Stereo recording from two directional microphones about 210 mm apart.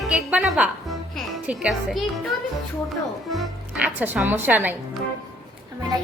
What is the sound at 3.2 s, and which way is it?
A woman's voice, centre (ahead or behind).